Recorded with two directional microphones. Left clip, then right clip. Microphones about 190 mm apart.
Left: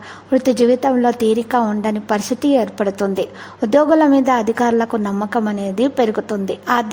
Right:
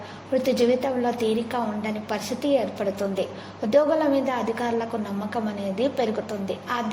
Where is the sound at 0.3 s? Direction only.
45° left (ahead or behind).